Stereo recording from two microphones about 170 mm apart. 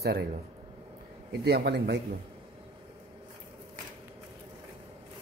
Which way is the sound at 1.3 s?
75° right (ahead or behind).